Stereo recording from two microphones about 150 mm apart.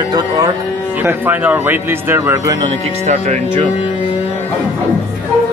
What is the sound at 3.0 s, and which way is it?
Speech, 50° right (ahead or behind).